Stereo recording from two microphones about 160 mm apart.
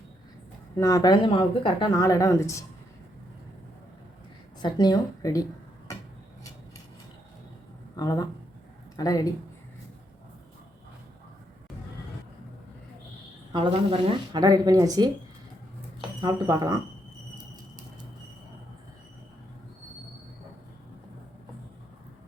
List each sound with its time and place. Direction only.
0.8 s speech: 20° left (ahead or behind)
4.6 s speech: 25° left (ahead or behind)
7.9 s speech: 25° left (ahead or behind)
13.5 s speech: 30° right (ahead or behind)
16.2 s speech: 25° right (ahead or behind)